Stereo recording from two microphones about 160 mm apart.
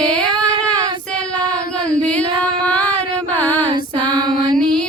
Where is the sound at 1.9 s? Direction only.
5° left (ahead or behind).